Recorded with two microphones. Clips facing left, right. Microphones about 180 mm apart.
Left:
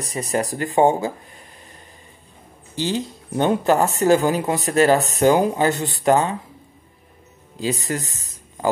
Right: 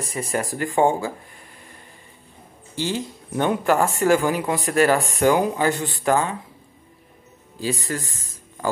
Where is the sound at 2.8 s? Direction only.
20° left (ahead or behind).